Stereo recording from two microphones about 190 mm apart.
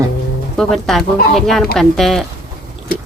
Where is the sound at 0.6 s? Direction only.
Centre (ahead or behind).